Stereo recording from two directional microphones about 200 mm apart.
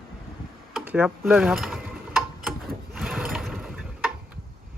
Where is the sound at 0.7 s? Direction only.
10° right (ahead or behind).